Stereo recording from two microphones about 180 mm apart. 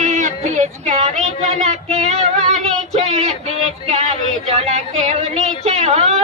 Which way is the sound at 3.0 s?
35° right (ahead or behind).